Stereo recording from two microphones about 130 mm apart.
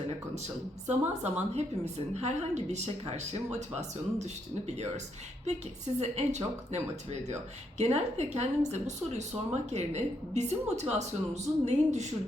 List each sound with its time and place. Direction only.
0.9 s a woman's voice: 60° right (ahead or behind)